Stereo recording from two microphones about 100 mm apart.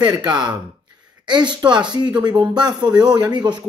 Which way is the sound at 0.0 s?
45° right (ahead or behind).